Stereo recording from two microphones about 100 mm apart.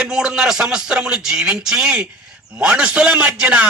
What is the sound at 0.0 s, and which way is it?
A man's voice, 5° right (ahead or behind).